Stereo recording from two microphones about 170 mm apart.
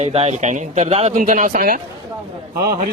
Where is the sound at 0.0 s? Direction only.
40° right (ahead or behind); by 1.8 s 55° right (ahead or behind).